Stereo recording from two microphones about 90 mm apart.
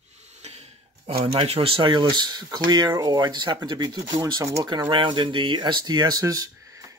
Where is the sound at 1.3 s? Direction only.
90° right; by 2.9 s 55° right (ahead or behind).